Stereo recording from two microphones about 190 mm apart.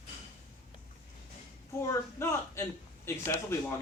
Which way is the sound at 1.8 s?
15° left (ahead or behind).